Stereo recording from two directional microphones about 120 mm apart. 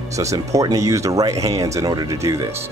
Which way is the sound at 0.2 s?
25° right (ahead or behind).